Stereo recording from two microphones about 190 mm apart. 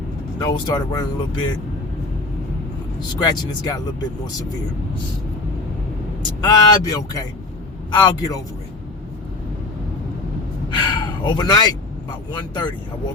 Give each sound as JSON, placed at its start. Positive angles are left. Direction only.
{"t": 0.3, "sound": "speech", "side_deg": 20}
{"t": 3.2, "sound": "speech", "side_deg": 20}
{"t": 6.4, "sound": "speech", "side_deg": 20}
{"t": 10.7, "sound": "speech", "side_deg": 25}